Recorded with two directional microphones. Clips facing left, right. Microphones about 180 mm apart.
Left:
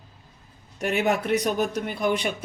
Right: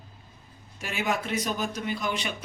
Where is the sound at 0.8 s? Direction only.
60° left (ahead or behind).